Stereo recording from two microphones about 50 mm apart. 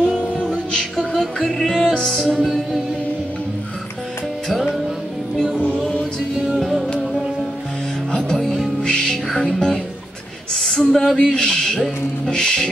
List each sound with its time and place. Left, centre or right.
0.2 s music: left
0.5 s music: centre
0.9 s music: centre
5.3 s music: centre
5.9 s music: centre
6.5 s music: centre
8.1 s music: centre
10.5 s a sound: centre
11.3 s speech: centre
12.3 s music: centre